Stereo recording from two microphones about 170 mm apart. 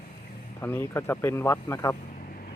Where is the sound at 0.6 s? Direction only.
15° left (ahead or behind).